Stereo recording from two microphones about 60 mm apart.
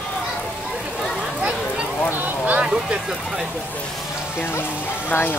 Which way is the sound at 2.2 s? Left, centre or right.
Right.